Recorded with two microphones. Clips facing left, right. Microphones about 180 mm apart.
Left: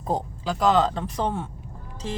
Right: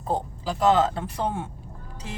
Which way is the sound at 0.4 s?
5° right (ahead or behind).